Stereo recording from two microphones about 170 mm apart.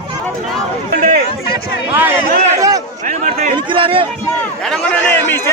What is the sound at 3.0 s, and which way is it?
Speech, 45° right (ahead or behind).